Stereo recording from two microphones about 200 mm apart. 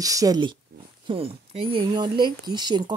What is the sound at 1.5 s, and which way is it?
Speech, 25° right (ahead or behind).